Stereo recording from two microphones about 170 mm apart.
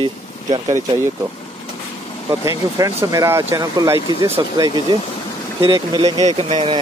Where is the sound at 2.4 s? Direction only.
20° right (ahead or behind).